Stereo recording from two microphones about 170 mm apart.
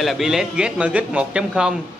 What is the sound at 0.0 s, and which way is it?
A man's voice, centre (ahead or behind).